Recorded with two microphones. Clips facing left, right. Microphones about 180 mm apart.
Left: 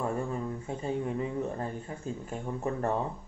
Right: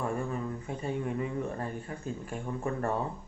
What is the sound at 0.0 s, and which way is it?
Speech, 25° left (ahead or behind).